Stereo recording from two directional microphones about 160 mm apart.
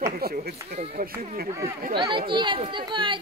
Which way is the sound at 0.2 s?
70° right (ahead or behind).